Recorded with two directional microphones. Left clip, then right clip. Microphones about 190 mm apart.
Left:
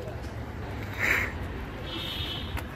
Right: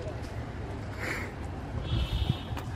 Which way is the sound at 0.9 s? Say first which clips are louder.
Left 10 dB; 10° right (ahead or behind).